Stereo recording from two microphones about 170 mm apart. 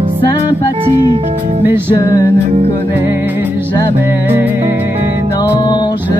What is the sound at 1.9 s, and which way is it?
Music, 20° left (ahead or behind).